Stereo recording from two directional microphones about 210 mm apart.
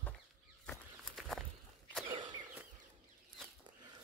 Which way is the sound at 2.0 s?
20° right (ahead or behind).